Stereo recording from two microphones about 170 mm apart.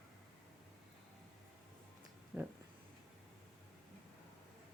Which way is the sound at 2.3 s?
10° right (ahead or behind).